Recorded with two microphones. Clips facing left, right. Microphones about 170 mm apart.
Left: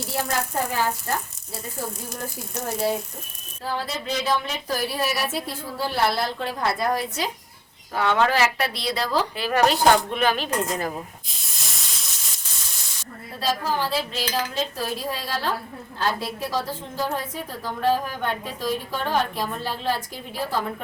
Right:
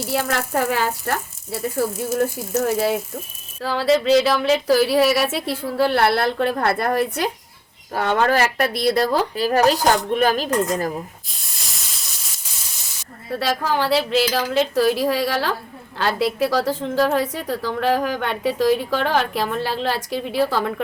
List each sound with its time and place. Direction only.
0.1 s a woman's voice: 85° right; by 7.3 s 60° right (ahead or behind)
7.9 s speech: 45° right (ahead or behind)
11.3 s steam: centre (ahead or behind)
13.4 s a woman's voice: 75° right (ahead or behind)